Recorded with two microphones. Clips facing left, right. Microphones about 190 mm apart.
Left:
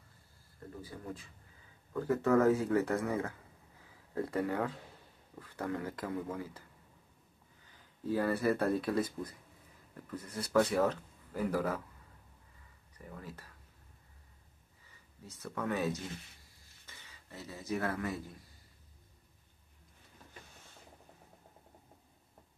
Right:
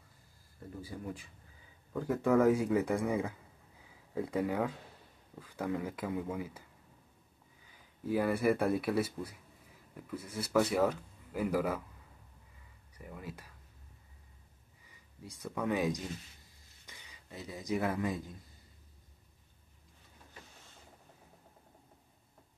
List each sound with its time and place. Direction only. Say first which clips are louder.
0.9 s speech: right 2 dB; 10° right (ahead or behind)
7.6 s speech: even; 10° right (ahead or behind)
12.9 s speech: right 2 dB; 10° right (ahead or behind)
15.2 s speech: right 2 dB; 15° right (ahead or behind)